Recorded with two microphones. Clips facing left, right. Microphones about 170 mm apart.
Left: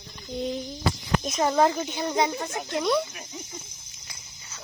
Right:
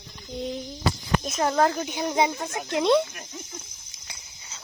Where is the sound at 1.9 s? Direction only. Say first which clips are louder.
Right 1 dB; 15° right (ahead or behind).